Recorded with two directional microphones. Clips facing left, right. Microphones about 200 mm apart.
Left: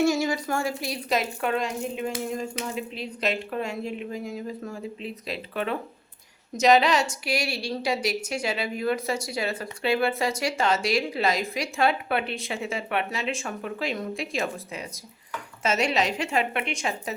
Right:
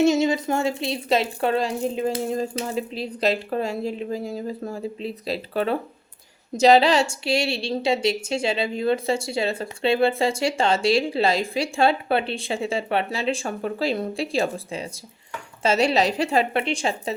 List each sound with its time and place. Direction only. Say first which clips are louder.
0.0 s a woman's voice: right 5 dB; 20° right (ahead or behind)